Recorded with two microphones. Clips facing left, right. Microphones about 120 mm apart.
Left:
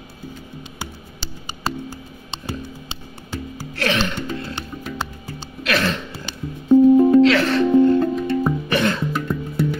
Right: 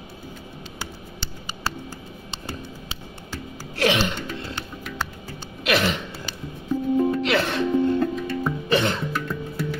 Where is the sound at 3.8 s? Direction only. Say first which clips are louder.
Even; 20° right (ahead or behind).